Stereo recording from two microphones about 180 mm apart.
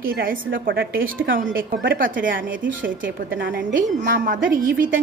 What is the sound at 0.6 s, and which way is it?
Speech, 70° right (ahead or behind).